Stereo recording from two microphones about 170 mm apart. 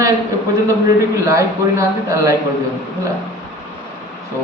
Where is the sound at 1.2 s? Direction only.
20° right (ahead or behind).